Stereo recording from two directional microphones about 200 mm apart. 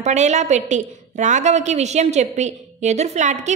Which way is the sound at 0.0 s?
35° right (ahead or behind).